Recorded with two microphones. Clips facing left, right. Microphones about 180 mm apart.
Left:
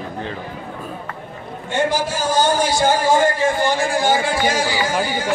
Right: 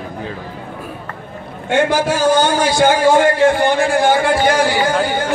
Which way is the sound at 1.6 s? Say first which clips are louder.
Right 5 dB; 65° right (ahead or behind).